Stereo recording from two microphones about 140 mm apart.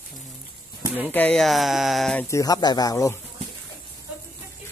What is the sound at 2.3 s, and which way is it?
Speech, 25° left (ahead or behind).